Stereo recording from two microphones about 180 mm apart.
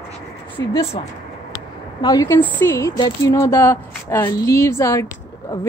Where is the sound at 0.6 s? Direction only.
20° left (ahead or behind).